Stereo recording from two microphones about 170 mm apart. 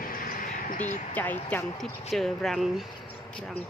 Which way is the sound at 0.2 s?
55° left (ahead or behind).